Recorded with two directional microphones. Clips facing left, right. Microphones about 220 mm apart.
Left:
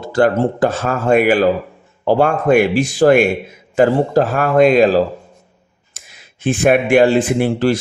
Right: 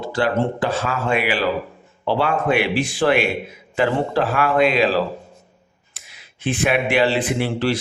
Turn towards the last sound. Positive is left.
turn(degrees=45)  # may be behind; listen again after turning